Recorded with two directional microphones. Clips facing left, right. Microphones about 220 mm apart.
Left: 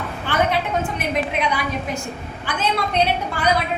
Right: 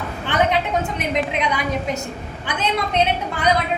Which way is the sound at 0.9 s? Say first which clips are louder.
Right 1 dB; 20° right (ahead or behind).